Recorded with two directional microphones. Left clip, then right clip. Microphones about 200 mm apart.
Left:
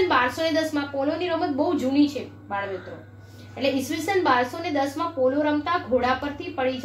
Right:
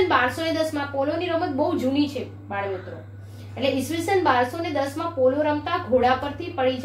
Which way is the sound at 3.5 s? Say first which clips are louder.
Right 1 dB; 20° left (ahead or behind).